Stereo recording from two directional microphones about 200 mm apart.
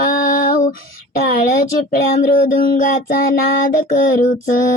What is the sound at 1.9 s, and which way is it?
Child singing, 45° left (ahead or behind).